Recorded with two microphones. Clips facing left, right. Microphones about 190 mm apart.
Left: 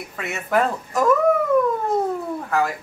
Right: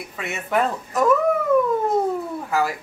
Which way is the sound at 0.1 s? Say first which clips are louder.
Left 2 dB; centre (ahead or behind).